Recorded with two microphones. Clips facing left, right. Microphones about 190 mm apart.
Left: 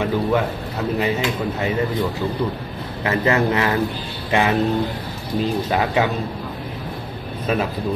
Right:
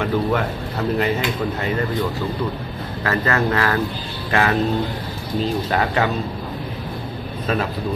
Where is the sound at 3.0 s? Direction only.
20° left (ahead or behind).